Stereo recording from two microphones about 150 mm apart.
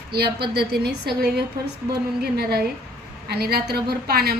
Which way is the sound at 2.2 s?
90° right.